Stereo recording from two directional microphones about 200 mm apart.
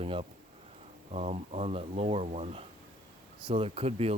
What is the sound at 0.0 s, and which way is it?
Speech, 30° right (ahead or behind).